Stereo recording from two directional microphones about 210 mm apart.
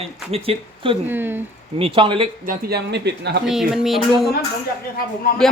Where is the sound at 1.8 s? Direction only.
25° right (ahead or behind).